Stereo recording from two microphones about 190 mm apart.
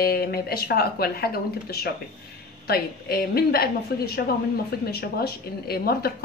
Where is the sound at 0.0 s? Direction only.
55° left (ahead or behind).